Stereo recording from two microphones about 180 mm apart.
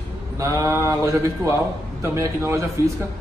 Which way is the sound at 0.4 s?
15° right (ahead or behind).